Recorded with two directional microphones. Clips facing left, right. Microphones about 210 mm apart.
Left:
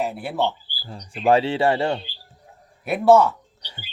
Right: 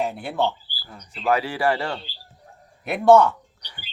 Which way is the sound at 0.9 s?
30° left (ahead or behind).